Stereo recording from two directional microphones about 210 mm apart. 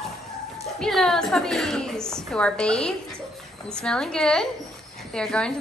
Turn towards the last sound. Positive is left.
turn(degrees=5)  # may be behind; listen again after turning